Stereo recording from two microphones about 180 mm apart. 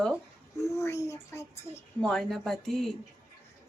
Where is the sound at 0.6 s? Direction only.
15° left (ahead or behind).